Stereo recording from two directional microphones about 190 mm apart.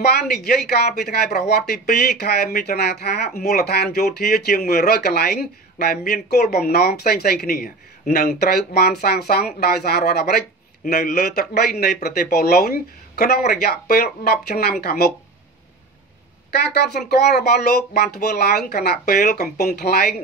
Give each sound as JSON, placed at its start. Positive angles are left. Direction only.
{"t": 1.0, "sound": "speech", "side_deg": 60}
{"t": 16.4, "sound": "speech", "side_deg": 60}